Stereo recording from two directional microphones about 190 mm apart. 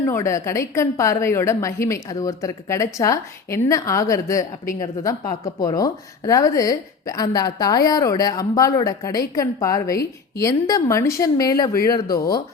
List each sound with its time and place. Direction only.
0.0 s a woman's voice: 15° left (ahead or behind)